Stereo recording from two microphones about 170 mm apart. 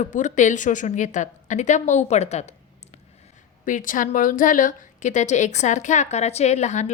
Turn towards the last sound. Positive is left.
turn(degrees=45)  # may be behind; listen again after turning